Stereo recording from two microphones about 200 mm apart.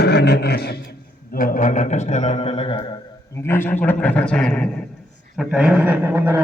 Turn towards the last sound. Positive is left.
turn(degrees=-10)  # may be behind; listen again after turning